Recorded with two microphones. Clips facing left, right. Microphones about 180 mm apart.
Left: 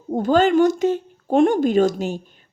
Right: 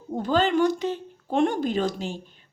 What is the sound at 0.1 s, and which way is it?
A woman's voice, 45° left (ahead or behind).